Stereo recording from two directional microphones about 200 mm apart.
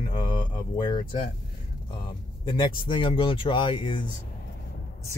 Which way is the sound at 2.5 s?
25° left (ahead or behind).